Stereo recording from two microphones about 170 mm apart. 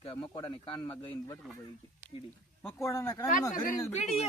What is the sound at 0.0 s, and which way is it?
Speech, 35° left (ahead or behind).